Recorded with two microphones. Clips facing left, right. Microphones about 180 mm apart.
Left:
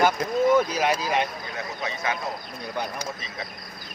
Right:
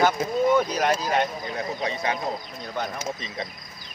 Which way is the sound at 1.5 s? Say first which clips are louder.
Right 3 dB; 35° right (ahead or behind).